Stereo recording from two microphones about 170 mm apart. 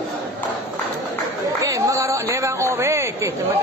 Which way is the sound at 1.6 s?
20° right (ahead or behind).